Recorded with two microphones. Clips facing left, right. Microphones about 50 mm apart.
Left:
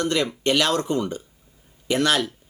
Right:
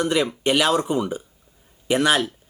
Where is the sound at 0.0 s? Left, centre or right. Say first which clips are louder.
Right 2 dB; centre.